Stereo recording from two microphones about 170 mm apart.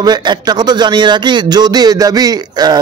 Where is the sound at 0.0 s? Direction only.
25° right (ahead or behind).